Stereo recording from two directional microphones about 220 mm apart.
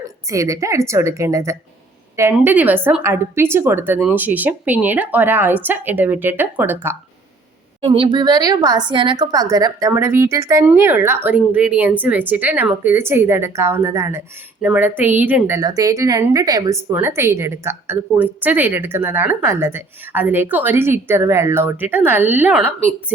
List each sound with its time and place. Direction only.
0.0 s speech: 15° right (ahead or behind)
7.8 s speech: 25° right (ahead or behind); by 23.1 s 5° right (ahead or behind)